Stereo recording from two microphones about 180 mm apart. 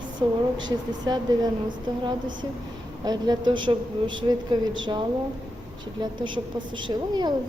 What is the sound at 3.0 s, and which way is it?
A woman's voice, 20° right (ahead or behind).